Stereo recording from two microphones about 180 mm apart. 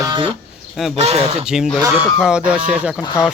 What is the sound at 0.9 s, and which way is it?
Speech, 35° right (ahead or behind).